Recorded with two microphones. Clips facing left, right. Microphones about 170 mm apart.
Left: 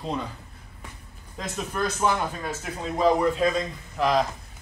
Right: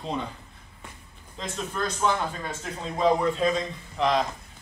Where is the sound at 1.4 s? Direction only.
5° left (ahead or behind).